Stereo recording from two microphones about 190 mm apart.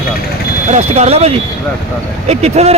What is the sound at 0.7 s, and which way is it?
A man's voice, 35° right (ahead or behind).